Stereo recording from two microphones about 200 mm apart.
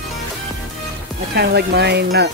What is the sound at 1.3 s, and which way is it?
Speech, 55° right (ahead or behind).